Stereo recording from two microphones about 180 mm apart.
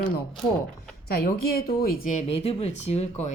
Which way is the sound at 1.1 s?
60° left (ahead or behind).